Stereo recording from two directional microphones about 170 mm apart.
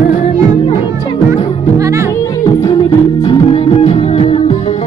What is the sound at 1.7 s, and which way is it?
Music, 20° right (ahead or behind).